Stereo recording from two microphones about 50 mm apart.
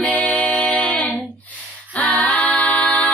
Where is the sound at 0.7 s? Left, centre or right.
Left.